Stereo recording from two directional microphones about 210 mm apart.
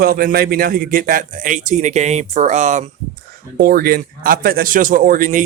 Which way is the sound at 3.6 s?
45° right (ahead or behind).